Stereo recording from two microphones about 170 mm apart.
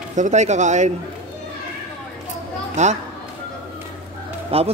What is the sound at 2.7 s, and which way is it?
Speech, 45° right (ahead or behind).